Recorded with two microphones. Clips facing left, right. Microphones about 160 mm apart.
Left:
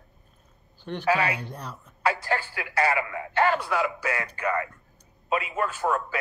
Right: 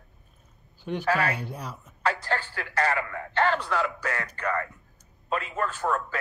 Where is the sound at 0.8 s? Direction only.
10° right (ahead or behind).